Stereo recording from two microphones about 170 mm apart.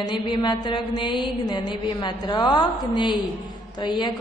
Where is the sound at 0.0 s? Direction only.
25° left (ahead or behind).